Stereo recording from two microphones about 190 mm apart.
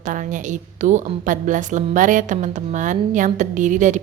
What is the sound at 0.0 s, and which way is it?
A woman's voice, 40° right (ahead or behind).